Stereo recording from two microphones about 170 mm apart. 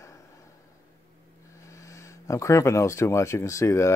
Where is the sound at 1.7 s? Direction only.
20° left (ahead or behind).